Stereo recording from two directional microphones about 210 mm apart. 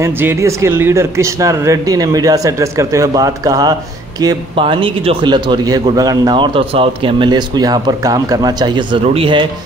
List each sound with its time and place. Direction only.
0.0 s a man's voice: 10° right (ahead or behind)